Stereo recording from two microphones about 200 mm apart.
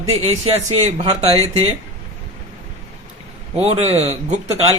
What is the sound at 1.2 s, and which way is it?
Speech, 30° right (ahead or behind).